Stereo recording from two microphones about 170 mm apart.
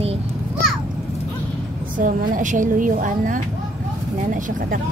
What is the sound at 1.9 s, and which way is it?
A woman's voice, 50° right (ahead or behind).